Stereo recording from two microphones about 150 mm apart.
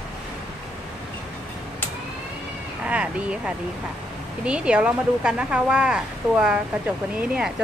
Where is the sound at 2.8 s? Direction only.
10° right (ahead or behind).